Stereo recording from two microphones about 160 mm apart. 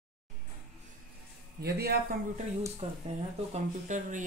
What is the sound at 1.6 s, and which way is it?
Speech, 85° right.